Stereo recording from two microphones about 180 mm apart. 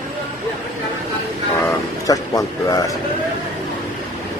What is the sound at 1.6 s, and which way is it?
Speech, 20° left (ahead or behind).